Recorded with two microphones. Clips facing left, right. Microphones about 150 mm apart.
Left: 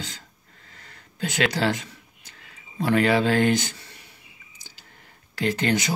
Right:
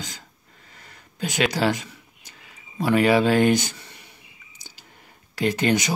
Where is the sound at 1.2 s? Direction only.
15° right (ahead or behind).